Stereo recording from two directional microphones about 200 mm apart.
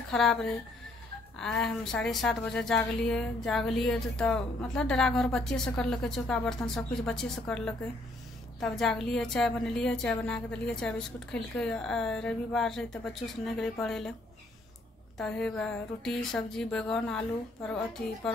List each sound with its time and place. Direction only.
0.1 s a woman's voice: centre (ahead or behind)
15.1 s a woman's voice: 5° left (ahead or behind)